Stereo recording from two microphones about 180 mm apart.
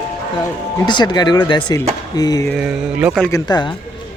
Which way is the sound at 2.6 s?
5° right (ahead or behind).